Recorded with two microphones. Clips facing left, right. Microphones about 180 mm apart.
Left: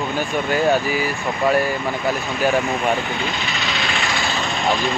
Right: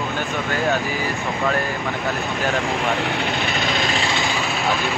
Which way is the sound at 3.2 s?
55° right (ahead or behind).